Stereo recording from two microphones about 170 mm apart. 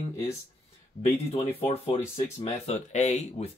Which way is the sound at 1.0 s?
40° left (ahead or behind).